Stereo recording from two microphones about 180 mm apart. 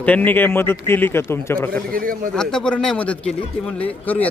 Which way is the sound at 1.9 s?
50° right (ahead or behind).